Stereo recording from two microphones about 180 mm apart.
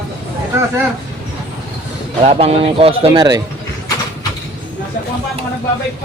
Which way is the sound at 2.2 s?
35° right (ahead or behind).